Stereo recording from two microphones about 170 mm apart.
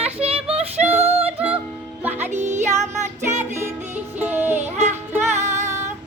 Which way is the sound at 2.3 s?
45° right (ahead or behind).